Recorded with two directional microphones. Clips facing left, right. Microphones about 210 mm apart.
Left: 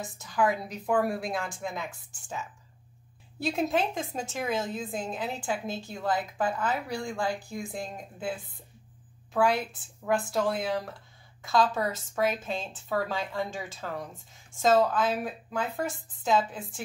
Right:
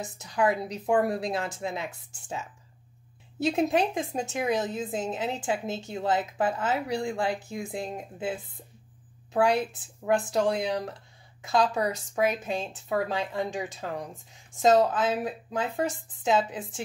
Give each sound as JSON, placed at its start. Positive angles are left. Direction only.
{"t": 0.0, "sound": "speech", "side_deg": -20}
{"t": 10.0, "sound": "a woman's voice", "side_deg": -20}